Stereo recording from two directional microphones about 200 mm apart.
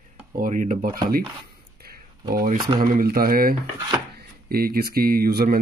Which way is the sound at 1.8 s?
50° right (ahead or behind).